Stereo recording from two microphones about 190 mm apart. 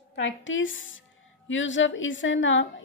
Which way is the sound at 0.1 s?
80° left.